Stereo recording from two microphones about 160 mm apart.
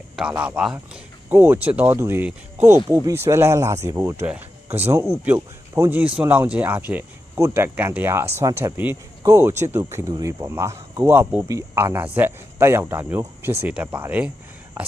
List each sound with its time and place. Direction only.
0.2 s speech: 5° right (ahead or behind)